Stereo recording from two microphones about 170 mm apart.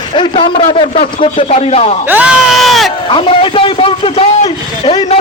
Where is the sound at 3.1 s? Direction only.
30° left (ahead or behind).